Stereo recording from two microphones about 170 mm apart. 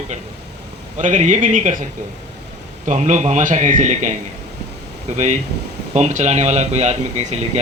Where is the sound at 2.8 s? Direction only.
45° right (ahead or behind).